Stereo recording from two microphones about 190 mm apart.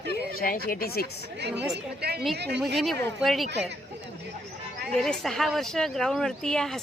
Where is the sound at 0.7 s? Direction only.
50° left (ahead or behind).